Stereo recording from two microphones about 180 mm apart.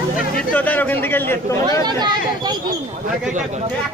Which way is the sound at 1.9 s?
25° right (ahead or behind).